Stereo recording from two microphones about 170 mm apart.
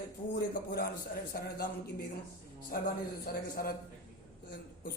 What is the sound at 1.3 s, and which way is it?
A man's voice, 65° left (ahead or behind).